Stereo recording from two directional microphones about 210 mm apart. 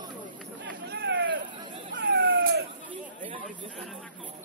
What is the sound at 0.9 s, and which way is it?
Hubbub, 55° right (ahead or behind).